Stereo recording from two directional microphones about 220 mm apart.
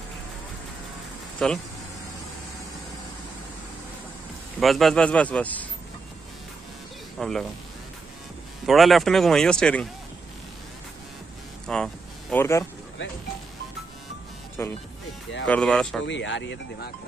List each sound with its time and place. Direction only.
1.4 s speech: 5° left (ahead or behind)
4.6 s speech: centre (ahead or behind)
7.2 s speech: centre (ahead or behind)
8.6 s speech: centre (ahead or behind)
11.6 s speech: 5° left (ahead or behind)
14.6 s speech: 10° left (ahead or behind)
16.1 s speech: 55° left (ahead or behind)